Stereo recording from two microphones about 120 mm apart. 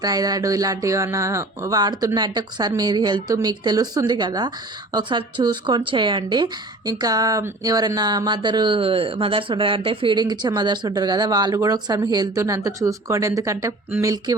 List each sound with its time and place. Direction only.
0.0 s speech: 30° right (ahead or behind)